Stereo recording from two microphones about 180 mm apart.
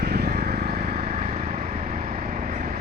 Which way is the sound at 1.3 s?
35° right (ahead or behind).